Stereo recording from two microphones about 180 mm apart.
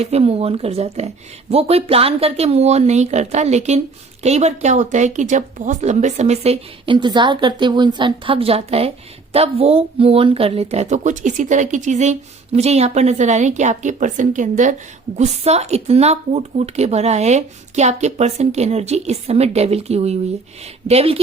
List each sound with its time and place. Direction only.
0.0 s speech: 35° right (ahead or behind)